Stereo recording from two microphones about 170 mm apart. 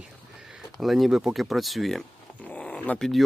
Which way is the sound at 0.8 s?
Centre (ahead or behind).